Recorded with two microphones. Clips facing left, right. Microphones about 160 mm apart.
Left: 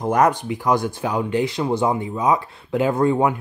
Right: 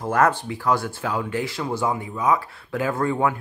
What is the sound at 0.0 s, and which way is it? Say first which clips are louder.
Speech: left 2 dB; 15° left (ahead or behind).